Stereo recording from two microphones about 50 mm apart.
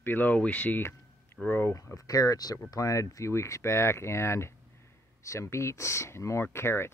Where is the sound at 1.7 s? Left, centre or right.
Left.